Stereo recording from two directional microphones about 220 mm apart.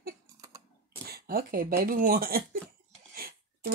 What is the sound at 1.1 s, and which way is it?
Speech, 40° right (ahead or behind).